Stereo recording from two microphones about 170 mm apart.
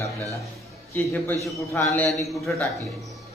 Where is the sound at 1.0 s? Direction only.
10° left (ahead or behind).